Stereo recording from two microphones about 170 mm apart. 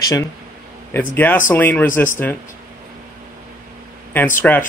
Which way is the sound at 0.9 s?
10° left (ahead or behind).